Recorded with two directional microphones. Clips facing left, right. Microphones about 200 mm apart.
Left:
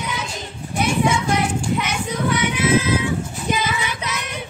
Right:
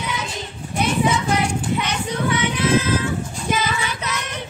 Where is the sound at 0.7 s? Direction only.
5° left (ahead or behind).